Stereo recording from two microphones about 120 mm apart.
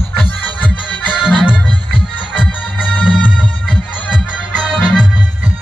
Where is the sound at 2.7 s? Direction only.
10° left (ahead or behind).